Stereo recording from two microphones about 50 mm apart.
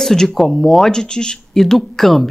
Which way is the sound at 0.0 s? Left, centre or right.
Centre.